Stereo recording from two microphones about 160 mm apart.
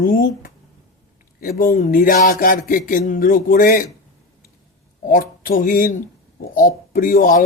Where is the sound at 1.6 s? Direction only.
60° left (ahead or behind).